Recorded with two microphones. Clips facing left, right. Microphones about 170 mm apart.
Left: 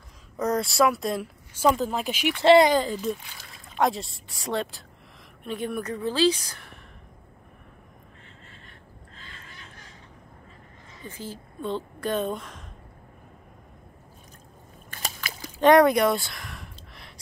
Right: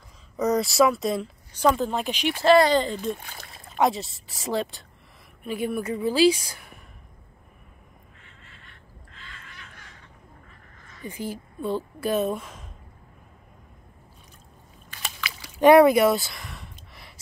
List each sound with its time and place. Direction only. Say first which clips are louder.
0.4 s speech: right 2 dB; centre (ahead or behind)
2.4 s speech: left 1 dB; 20° left (ahead or behind)
2.7 s speech: right 1 dB; 5° left (ahead or behind)
3.2 s speech: right 4 dB; 50° right (ahead or behind)
3.7 s a woman's voice: right 2 dB; centre (ahead or behind)
9.1 s a sound: right 1 dB; 35° left (ahead or behind)
11.1 s a woman's voice: right 5 dB; 15° right (ahead or behind)
14.9 s biting: even; 40° left (ahead or behind)
15.6 s a sound: right 3 dB; 5° right (ahead or behind)